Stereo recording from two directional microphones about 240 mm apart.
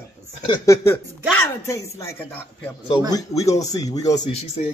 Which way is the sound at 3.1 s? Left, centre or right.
Centre.